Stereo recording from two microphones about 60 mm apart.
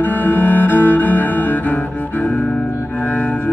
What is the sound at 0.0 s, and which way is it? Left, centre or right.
Cello, left.